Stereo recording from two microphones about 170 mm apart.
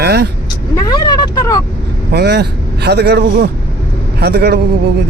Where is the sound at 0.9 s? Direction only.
25° left (ahead or behind).